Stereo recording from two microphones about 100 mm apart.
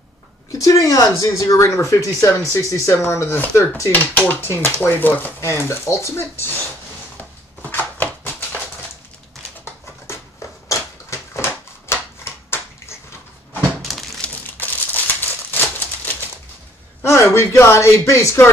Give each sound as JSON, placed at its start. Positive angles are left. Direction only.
{"t": 0.5, "sound": "speech", "side_deg": 35}
{"t": 7.2, "sound": "a sound", "side_deg": 20}
{"t": 10.7, "sound": "typewriter", "side_deg": 30}
{"t": 13.7, "sound": "crumpling", "side_deg": 0}
{"t": 14.6, "sound": "typewriter", "side_deg": 20}
{"t": 17.0, "sound": "speech", "side_deg": 25}